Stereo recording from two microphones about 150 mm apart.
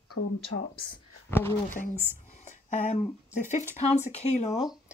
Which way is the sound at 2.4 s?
50° left (ahead or behind).